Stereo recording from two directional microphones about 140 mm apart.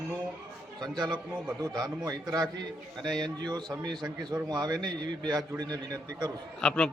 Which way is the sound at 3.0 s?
5° left (ahead or behind).